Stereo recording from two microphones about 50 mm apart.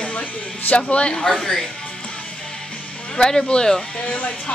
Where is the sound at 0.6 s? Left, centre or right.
Left.